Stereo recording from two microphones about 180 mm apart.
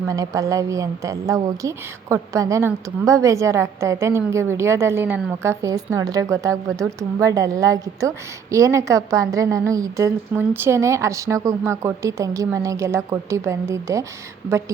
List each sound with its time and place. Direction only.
0.1 s a woman's voice: 20° right (ahead or behind)